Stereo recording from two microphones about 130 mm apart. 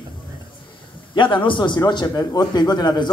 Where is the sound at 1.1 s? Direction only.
40° left (ahead or behind).